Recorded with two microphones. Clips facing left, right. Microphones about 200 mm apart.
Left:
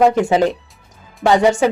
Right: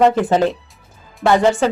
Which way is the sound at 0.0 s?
15° left (ahead or behind).